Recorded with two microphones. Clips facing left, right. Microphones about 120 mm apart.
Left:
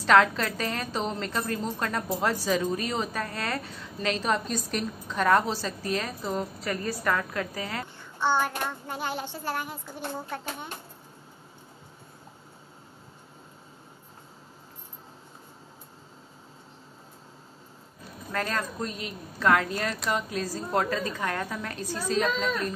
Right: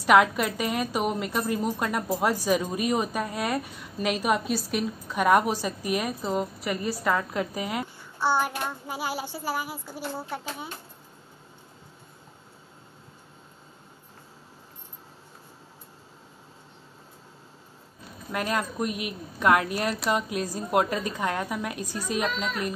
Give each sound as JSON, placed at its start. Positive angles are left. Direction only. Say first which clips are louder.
{"t": 0.0, "sound": "a woman's voice", "louder": "right 1 dB", "side_deg": -15}
{"t": 18.3, "sound": "a woman's voice", "louder": "right 2 dB", "side_deg": -15}